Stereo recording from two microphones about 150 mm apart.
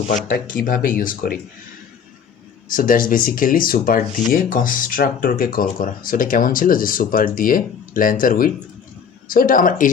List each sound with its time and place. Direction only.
0.1 s speech: 65° left (ahead or behind)
2.6 s speech: 70° left (ahead or behind)